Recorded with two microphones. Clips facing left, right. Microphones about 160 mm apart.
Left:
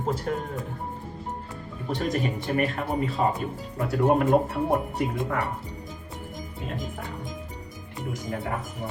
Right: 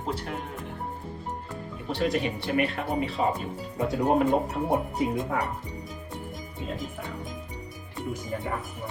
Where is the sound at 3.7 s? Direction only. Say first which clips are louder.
Left 1 dB; 65° left (ahead or behind).